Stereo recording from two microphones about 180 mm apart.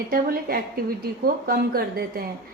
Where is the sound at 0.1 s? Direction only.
55° right (ahead or behind).